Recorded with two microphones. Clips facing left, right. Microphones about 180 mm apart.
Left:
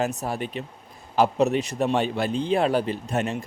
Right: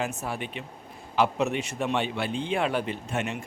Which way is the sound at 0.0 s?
40° left (ahead or behind).